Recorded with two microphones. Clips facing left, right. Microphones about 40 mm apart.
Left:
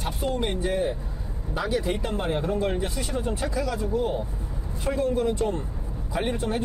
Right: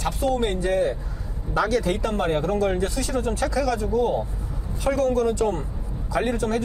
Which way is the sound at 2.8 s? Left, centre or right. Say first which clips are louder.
Right 4 dB; left.